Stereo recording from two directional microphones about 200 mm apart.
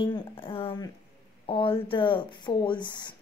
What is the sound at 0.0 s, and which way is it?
Speech, 25° left (ahead or behind).